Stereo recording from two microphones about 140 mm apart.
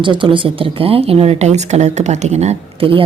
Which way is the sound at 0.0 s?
35° right (ahead or behind).